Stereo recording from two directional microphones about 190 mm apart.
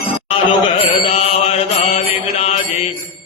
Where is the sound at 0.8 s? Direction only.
35° left (ahead or behind).